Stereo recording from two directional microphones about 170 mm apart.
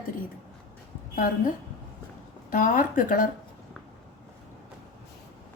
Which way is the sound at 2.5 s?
50° left (ahead or behind).